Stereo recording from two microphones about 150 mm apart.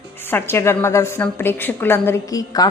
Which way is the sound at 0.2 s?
15° left (ahead or behind).